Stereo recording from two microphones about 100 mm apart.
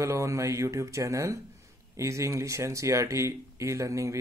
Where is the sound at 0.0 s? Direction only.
30° right (ahead or behind).